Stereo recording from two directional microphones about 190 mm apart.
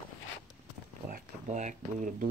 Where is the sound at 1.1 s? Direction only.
40° right (ahead or behind).